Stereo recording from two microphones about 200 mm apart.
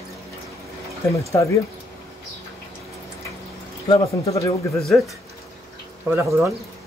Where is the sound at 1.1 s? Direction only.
15° left (ahead or behind).